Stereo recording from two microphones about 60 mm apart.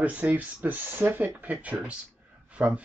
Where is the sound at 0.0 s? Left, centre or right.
Right.